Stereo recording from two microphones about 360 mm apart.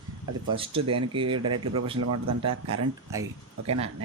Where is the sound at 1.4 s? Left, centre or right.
Right.